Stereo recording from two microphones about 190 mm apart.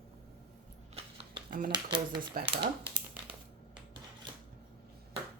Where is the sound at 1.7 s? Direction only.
25° right (ahead or behind).